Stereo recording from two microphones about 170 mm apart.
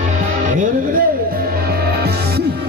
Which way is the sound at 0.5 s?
50° right (ahead or behind).